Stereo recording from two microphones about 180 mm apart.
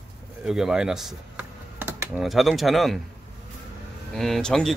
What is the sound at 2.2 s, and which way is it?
Speech, centre (ahead or behind).